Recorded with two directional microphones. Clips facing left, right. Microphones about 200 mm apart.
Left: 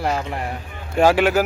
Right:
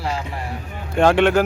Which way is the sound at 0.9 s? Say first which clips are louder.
Right 1 dB; 5° left (ahead or behind).